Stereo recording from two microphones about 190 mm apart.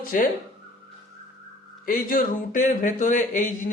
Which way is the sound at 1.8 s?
50° left (ahead or behind).